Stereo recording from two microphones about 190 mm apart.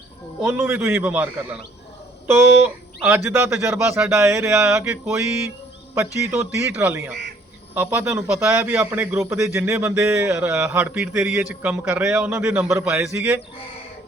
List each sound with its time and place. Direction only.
0.4 s a man's voice: 10° right (ahead or behind)